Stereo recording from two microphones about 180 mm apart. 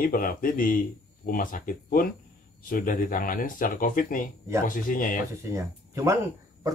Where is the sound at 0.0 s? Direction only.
55° left (ahead or behind).